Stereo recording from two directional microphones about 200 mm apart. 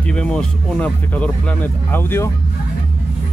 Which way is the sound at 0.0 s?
5° left (ahead or behind).